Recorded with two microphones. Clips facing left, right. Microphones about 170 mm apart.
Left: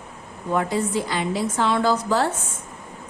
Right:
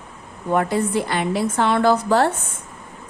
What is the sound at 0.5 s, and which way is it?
A woman's voice, 60° right (ahead or behind).